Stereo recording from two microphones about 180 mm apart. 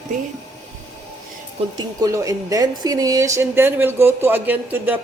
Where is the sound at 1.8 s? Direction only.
20° right (ahead or behind).